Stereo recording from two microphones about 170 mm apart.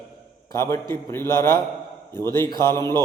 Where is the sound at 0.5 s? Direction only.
15° left (ahead or behind).